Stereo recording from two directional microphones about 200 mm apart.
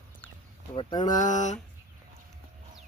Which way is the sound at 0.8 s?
20° left (ahead or behind).